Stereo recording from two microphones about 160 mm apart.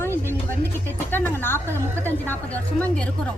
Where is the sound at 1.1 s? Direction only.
15° left (ahead or behind).